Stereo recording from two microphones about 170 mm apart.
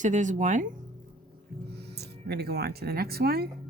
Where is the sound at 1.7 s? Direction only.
75° right (ahead or behind).